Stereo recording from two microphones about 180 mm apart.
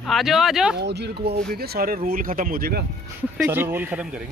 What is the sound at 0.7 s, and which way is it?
Speech, 65° right (ahead or behind).